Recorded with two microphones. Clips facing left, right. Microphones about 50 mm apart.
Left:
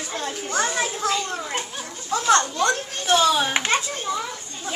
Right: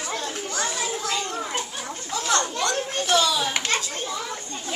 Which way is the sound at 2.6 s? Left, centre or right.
Left.